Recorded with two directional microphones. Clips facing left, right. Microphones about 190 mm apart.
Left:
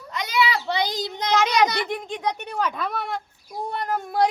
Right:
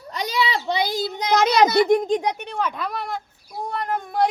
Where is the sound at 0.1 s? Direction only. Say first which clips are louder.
Even; 35° right (ahead or behind).